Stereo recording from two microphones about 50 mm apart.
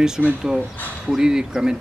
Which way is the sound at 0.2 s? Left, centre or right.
Centre.